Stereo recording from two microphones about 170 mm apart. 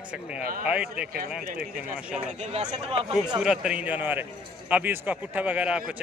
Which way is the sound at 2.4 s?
40° right (ahead or behind).